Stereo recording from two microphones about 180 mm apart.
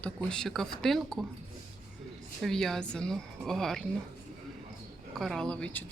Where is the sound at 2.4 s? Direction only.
Centre (ahead or behind).